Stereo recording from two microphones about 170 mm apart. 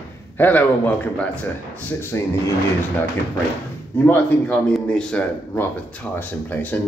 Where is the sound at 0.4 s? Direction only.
10° left (ahead or behind).